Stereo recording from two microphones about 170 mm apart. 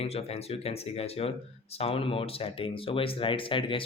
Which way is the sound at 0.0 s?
35° left (ahead or behind).